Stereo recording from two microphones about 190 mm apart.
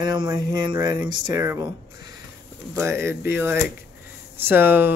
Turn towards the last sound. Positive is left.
turn(degrees=-10)  # may be behind; listen again after turning